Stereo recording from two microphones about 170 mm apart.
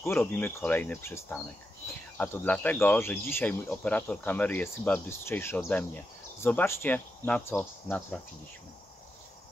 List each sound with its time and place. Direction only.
0.0 s speech: 10° left (ahead or behind)